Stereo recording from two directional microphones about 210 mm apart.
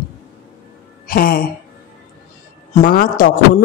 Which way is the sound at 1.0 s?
45° left (ahead or behind).